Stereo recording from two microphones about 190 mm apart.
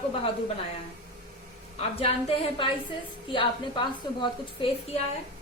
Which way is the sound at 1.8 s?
30° left (ahead or behind).